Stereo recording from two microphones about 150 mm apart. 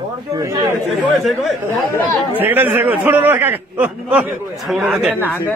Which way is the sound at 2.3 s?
15° right (ahead or behind).